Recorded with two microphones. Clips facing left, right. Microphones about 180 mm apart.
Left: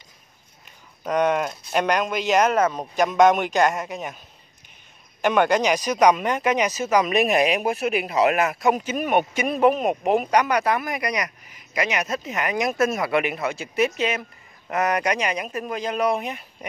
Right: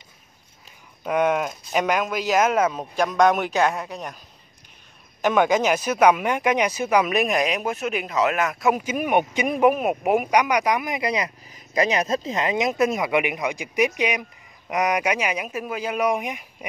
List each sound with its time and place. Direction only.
1.0 s speech: 5° right (ahead or behind)
5.2 s speech: 5° right (ahead or behind); by 11.3 s 25° right (ahead or behind)
11.5 s speech: 35° right (ahead or behind); by 16.4 s 10° right (ahead or behind)